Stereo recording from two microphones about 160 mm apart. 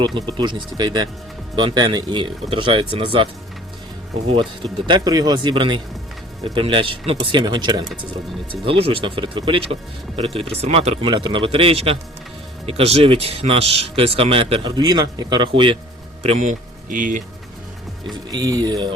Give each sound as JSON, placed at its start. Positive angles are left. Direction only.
{"t": 0.0, "sound": "speech", "side_deg": -30}
{"t": 4.4, "sound": "speech", "side_deg": -30}
{"t": 16.2, "sound": "speech", "side_deg": -45}
{"t": 18.1, "sound": "speech", "side_deg": -25}